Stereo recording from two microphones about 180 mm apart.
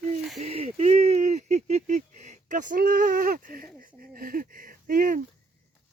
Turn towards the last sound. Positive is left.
turn(degrees=-50)  # may be behind; listen again after turning